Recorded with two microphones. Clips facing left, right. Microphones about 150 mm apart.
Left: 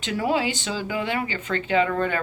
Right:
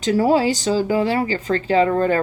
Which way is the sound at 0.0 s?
40° right (ahead or behind).